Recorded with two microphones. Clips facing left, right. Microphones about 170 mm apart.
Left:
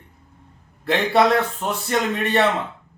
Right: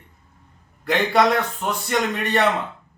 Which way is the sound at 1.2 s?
25° left (ahead or behind).